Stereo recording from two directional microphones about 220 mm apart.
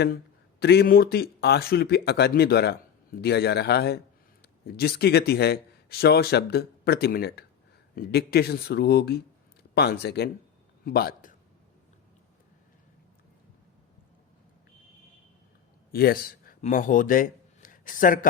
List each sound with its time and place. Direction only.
0.6 s a man's voice: 50° left (ahead or behind)
15.9 s speech: 45° left (ahead or behind)